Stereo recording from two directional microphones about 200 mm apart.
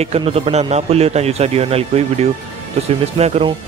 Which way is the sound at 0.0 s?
30° right (ahead or behind).